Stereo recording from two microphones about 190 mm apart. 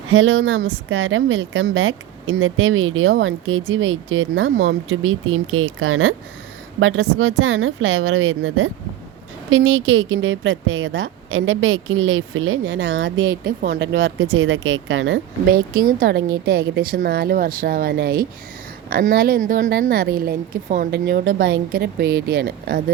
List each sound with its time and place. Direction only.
0.1 s speech: 90° right
13.6 s speech: 65° right (ahead or behind); by 15.2 s 85° right
15.7 s a woman's voice: 50° right (ahead or behind)
16.0 s a woman's voice: 65° right (ahead or behind)